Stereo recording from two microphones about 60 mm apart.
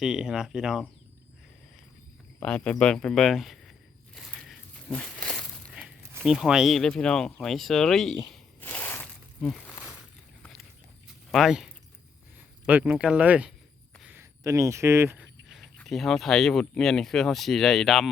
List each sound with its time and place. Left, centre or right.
0.0 s speech: centre
2.4 s speech: centre
3.2 s a sound: centre
6.2 s speech: centre
6.8 s speech: centre
8.7 s a sound: left
11.3 s speech: centre
12.6 s speech: right
14.4 s speech: right
15.4 s a sound: centre
15.9 s speech: centre